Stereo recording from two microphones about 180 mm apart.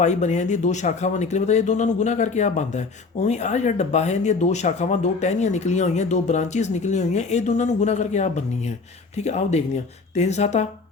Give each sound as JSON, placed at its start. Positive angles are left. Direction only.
{"t": 0.0, "sound": "speech", "side_deg": 40}